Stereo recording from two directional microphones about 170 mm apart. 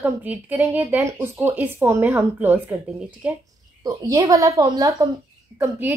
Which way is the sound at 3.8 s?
20° right (ahead or behind).